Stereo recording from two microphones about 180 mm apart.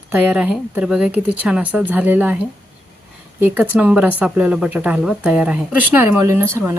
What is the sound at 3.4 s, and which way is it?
Speech, 10° right (ahead or behind).